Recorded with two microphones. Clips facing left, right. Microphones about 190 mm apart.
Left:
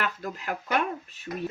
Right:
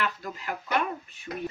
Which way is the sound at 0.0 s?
45° left (ahead or behind).